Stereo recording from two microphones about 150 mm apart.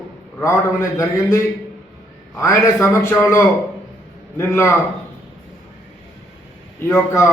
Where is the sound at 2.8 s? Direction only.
20° left (ahead or behind).